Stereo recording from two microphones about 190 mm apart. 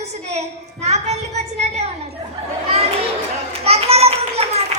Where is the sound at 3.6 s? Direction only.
35° right (ahead or behind).